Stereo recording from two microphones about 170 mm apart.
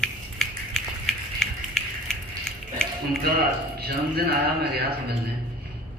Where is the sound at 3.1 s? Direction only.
60° right (ahead or behind).